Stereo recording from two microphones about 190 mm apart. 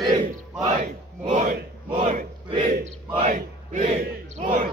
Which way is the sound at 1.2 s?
40° right (ahead or behind).